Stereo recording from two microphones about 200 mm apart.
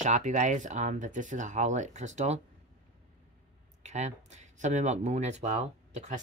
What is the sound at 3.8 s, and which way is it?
Speech, 35° right (ahead or behind).